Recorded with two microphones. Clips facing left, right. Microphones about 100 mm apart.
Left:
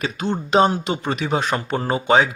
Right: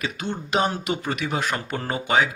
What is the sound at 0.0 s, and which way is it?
Speech, 35° left (ahead or behind).